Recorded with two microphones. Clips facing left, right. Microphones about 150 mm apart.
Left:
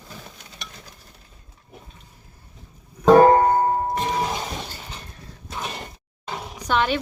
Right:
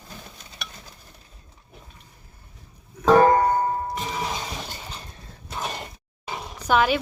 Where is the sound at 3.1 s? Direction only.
40° left (ahead or behind).